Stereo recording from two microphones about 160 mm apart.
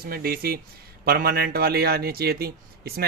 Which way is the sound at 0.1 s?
70° right (ahead or behind).